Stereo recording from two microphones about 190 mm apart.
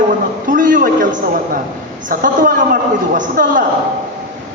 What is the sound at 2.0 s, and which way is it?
A man's voice, 45° right (ahead or behind).